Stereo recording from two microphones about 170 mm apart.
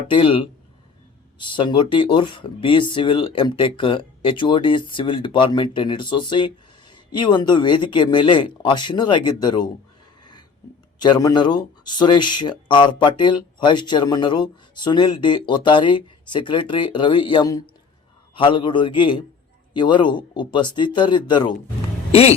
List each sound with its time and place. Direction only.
0.1 s speech: 30° left (ahead or behind)
11.0 s speech: 25° left (ahead or behind)
22.1 s speech: 35° left (ahead or behind)